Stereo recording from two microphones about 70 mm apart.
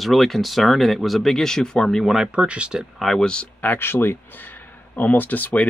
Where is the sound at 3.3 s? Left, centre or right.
Centre.